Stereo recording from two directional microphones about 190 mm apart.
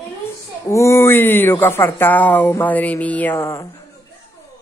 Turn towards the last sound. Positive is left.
turn(degrees=15)  # may be behind; listen again after turning